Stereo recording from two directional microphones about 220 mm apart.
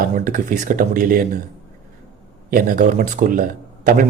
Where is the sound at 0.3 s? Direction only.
40° right (ahead or behind).